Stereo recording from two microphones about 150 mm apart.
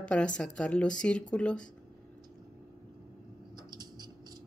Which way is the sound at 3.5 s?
30° right (ahead or behind).